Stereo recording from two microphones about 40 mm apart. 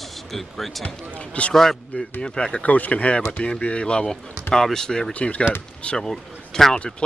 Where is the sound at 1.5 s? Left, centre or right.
Centre.